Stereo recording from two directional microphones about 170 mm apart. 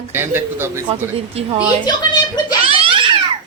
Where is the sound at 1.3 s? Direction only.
35° right (ahead or behind).